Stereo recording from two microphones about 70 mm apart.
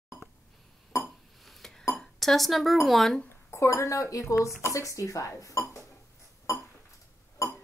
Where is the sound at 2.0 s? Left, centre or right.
Centre.